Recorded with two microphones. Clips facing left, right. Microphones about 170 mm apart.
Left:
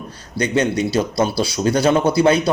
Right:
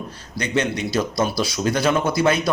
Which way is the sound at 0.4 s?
35° left (ahead or behind).